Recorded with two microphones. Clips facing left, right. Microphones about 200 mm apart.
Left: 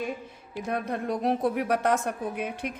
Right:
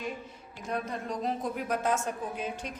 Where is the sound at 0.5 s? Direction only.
60° left (ahead or behind).